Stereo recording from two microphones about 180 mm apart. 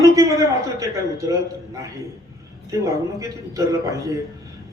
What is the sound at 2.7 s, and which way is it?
A man's voice, 20° right (ahead or behind).